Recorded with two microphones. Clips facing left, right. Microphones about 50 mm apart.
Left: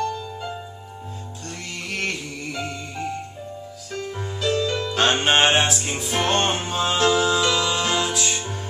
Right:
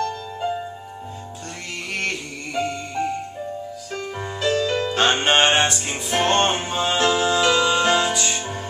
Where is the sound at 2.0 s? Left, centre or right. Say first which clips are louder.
Right 1 dB; centre.